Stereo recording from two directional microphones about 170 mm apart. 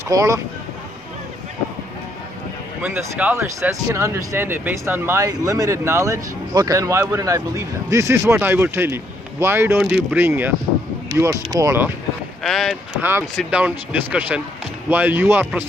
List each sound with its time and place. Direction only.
0.1 s speech: 20° right (ahead or behind)
2.8 s speech: 10° right (ahead or behind)
12.4 s speech: centre (ahead or behind)